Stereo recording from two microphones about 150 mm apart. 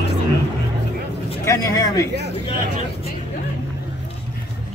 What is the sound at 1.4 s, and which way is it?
Speech, 20° left (ahead or behind).